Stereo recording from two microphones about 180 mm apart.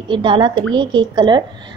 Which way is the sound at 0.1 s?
25° right (ahead or behind).